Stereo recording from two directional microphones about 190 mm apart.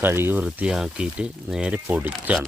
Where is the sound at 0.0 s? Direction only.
10° right (ahead or behind).